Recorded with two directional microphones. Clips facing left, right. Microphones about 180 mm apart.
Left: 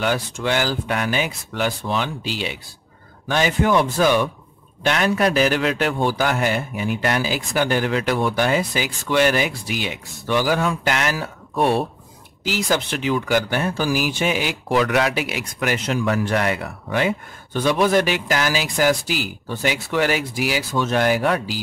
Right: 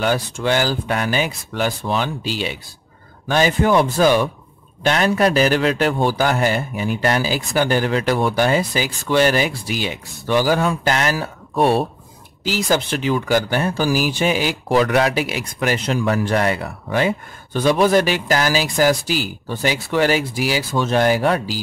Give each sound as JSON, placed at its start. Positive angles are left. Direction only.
{"t": 0.0, "sound": "speech", "side_deg": -35}